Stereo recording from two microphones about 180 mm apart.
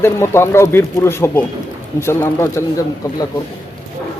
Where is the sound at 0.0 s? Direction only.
15° left (ahead or behind).